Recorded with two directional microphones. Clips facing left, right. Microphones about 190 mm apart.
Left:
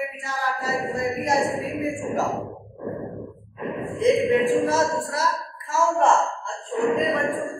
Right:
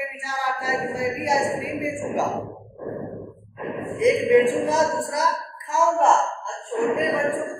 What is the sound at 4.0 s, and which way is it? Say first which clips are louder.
Speech: right 2 dB; 15° right (ahead or behind).